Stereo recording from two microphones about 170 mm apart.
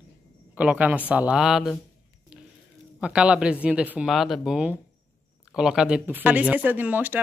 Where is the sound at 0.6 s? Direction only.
10° right (ahead or behind).